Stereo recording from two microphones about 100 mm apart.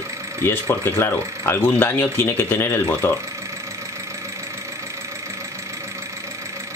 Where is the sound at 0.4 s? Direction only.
20° left (ahead or behind).